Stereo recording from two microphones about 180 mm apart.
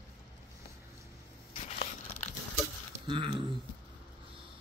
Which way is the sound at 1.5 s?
30° left (ahead or behind).